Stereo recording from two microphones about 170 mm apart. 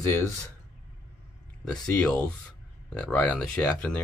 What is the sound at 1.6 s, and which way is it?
Speech, 5° left (ahead or behind).